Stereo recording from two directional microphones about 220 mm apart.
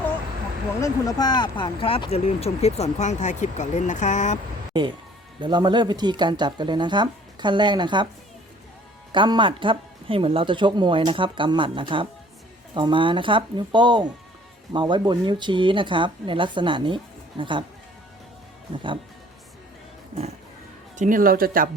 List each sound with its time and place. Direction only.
0.8 s speech: 15° left (ahead or behind); by 4.4 s 35° left (ahead or behind)
4.7 s speech: 20° right (ahead or behind)
9.1 s speech: 20° right (ahead or behind)
21.0 s speech: 40° right (ahead or behind)